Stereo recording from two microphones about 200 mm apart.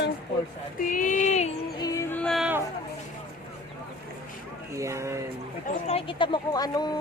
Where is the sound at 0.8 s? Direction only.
40° left (ahead or behind).